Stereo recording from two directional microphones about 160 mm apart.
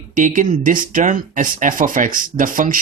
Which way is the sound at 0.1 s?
55° right (ahead or behind).